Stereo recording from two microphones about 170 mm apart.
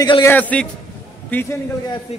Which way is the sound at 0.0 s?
25° left (ahead or behind).